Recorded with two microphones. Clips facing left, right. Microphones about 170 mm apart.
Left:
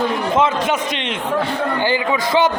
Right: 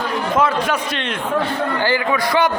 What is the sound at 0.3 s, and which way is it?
Speech, 20° left (ahead or behind).